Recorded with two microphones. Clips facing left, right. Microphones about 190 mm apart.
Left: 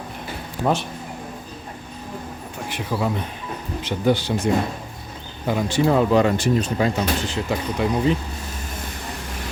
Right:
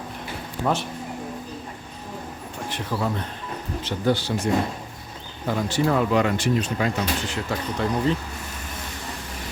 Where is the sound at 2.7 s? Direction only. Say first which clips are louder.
Left 3 dB; 10° left (ahead or behind).